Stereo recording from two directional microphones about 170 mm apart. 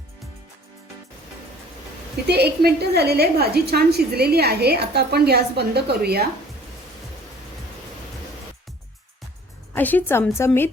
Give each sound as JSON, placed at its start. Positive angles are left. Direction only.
{"t": 2.2, "sound": "a woman's voice", "side_deg": -70}
{"t": 9.7, "sound": "a woman's voice", "side_deg": 10}